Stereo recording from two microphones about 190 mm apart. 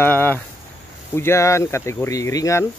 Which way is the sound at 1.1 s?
15° left (ahead or behind).